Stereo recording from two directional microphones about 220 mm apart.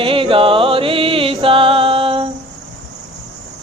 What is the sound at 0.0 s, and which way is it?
Music, 25° right (ahead or behind).